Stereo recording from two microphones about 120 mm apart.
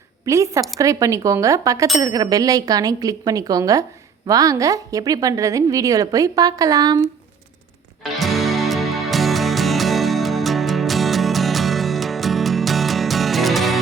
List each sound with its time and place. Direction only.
0.3 s a woman's voice: 25° right (ahead or behind)
8.2 s music: centre (ahead or behind)